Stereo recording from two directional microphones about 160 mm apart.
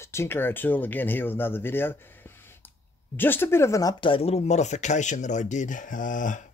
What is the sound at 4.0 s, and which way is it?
Speech, 35° left (ahead or behind).